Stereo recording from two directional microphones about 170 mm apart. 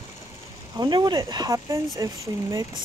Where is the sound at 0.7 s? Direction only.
25° right (ahead or behind).